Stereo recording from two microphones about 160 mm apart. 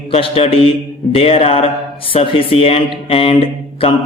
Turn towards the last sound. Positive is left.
turn(degrees=35)  # may be behind; listen again after turning